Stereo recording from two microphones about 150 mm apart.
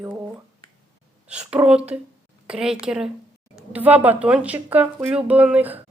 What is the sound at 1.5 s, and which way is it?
Speech, 5° right (ahead or behind).